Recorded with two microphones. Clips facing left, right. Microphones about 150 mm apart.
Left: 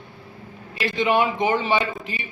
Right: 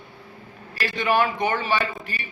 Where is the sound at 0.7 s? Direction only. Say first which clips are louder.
Left 2 dB; 20° left (ahead or behind).